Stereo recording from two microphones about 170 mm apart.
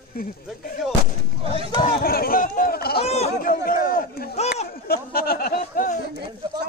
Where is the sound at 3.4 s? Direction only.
55° left (ahead or behind).